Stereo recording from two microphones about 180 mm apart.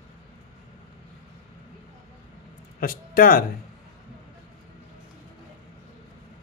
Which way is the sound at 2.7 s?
55° left (ahead or behind).